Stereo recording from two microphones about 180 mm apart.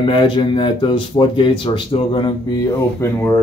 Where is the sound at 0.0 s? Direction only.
25° left (ahead or behind).